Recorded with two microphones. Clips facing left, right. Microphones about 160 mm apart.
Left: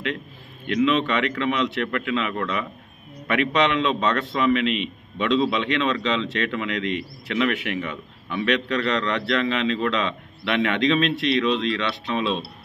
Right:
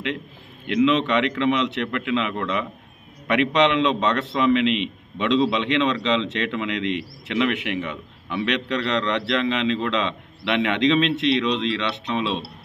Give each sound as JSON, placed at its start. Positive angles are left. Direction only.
{"t": 0.8, "sound": "a man's voice", "side_deg": -20}